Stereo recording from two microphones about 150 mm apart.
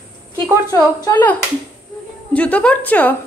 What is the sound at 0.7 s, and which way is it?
Speech, 20° left (ahead or behind).